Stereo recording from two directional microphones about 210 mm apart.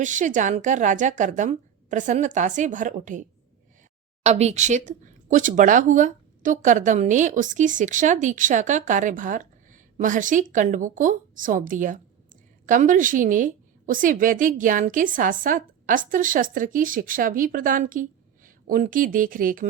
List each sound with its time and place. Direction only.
0.0 s speech: 35° right (ahead or behind)